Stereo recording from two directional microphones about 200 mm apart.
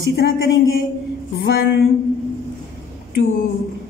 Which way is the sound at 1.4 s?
50° left (ahead or behind).